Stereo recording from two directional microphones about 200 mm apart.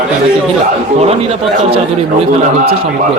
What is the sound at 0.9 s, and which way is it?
Speech, 30° right (ahead or behind).